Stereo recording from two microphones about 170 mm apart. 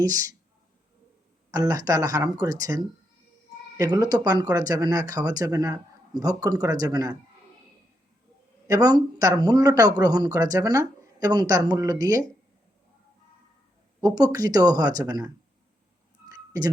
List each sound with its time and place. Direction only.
0.0 s speech: 20° right (ahead or behind)
1.5 s speech: 20° right (ahead or behind)
8.6 s speech: 20° right (ahead or behind)
14.0 s speech: 20° right (ahead or behind)
16.3 s a sound: 20° right (ahead or behind)